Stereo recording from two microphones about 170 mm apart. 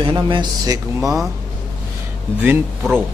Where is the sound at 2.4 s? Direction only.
10° right (ahead or behind).